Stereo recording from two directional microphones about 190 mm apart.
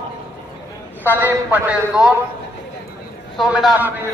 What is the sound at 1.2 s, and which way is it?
Speech, 10° right (ahead or behind).